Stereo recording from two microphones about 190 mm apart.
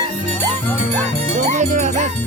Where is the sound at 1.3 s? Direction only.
40° right (ahead or behind).